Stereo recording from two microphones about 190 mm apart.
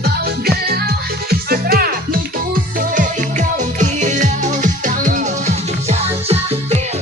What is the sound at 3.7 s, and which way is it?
Music, 40° right (ahead or behind).